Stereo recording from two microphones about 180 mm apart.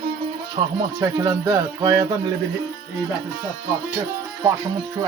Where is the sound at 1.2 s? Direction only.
20° right (ahead or behind).